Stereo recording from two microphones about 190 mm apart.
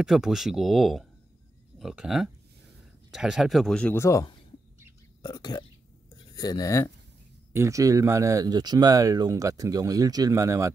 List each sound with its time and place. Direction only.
0.0 s speech: centre (ahead or behind); by 4.3 s 15° left (ahead or behind)
5.2 s a sound: 20° left (ahead or behind)
7.5 s speech: 15° right (ahead or behind)